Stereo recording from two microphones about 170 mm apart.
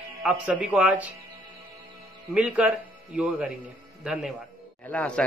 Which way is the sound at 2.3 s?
5° right (ahead or behind).